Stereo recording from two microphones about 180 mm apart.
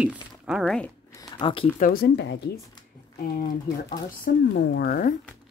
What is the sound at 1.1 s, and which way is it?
Speech, 25° left (ahead or behind).